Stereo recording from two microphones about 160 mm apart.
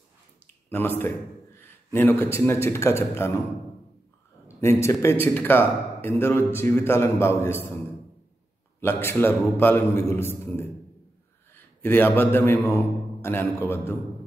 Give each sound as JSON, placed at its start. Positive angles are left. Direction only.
{"t": 0.7, "sound": "a man's voice", "side_deg": 15}
{"t": 4.6, "sound": "a man's voice", "side_deg": 15}
{"t": 8.8, "sound": "a man's voice", "side_deg": 15}